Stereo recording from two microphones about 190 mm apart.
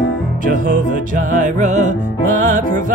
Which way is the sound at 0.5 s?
45° right (ahead or behind).